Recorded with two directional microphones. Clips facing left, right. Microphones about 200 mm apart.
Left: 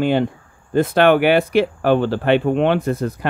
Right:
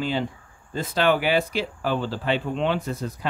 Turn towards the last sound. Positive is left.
turn(degrees=60)  # may be behind; listen again after turning